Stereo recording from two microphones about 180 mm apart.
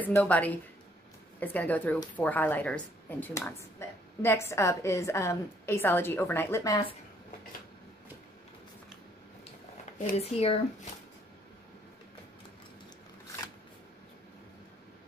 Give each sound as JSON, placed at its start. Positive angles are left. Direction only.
{"t": 0.0, "sound": "a woman's voice", "side_deg": 10}
{"t": 10.3, "sound": "speech", "side_deg": 35}